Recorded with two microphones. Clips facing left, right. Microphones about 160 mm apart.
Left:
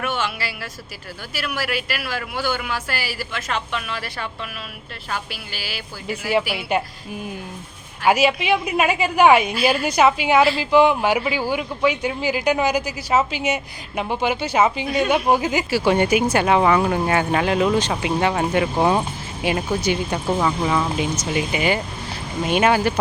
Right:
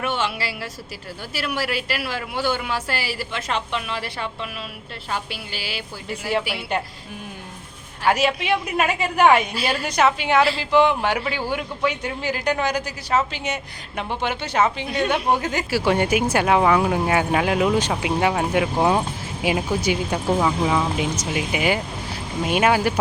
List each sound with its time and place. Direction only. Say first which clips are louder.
0.0 s speech: right 1 dB; 30° right (ahead or behind)
8.0 s a man's voice: left 3 dB; 5° left (ahead or behind)